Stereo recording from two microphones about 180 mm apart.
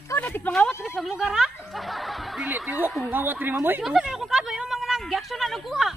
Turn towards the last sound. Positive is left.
turn(degrees=0)  # may be behind; listen again after turning